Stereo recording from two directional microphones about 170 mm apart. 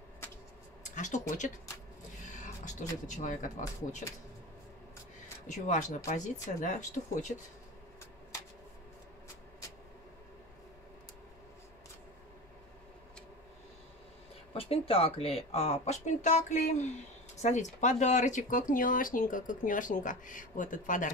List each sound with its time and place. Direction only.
0.9 s speech: 45° left (ahead or behind)
5.5 s speech: 45° left (ahead or behind)
14.5 s speech: 35° left (ahead or behind); by 21.1 s 50° left (ahead or behind)